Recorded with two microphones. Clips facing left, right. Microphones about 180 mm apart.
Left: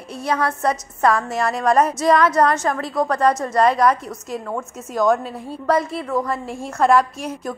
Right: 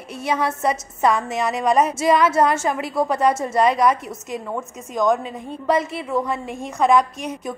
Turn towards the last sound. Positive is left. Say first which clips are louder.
# left 1 dB
turn(degrees=0)  # may be behind; listen again after turning